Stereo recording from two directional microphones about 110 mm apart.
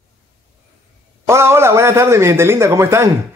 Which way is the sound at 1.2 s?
25° right (ahead or behind).